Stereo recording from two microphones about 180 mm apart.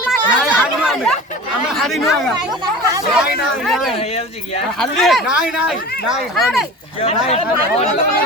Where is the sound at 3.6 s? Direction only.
Centre (ahead or behind).